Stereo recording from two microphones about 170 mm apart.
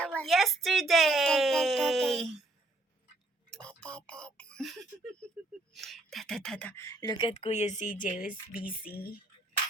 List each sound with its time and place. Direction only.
0.0 s speech: 5° left (ahead or behind)
3.5 s a sound: 5° left (ahead or behind)
5.7 s speech: centre (ahead or behind); by 8.6 s 50° left (ahead or behind)
8.8 s speech: 60° left (ahead or behind)